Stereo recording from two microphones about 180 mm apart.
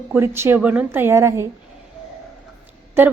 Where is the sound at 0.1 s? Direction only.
15° right (ahead or behind).